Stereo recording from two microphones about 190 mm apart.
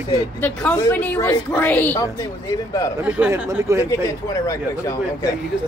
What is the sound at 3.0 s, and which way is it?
Speech, 5° right (ahead or behind).